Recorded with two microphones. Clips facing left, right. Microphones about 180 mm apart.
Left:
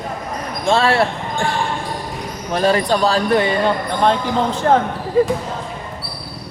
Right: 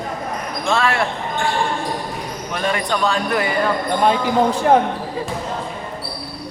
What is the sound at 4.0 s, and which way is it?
Speech, 10° right (ahead or behind).